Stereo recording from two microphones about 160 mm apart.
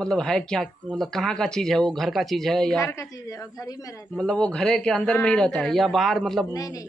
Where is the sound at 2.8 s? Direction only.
20° left (ahead or behind).